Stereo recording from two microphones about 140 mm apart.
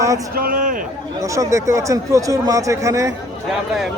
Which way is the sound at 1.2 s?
20° right (ahead or behind).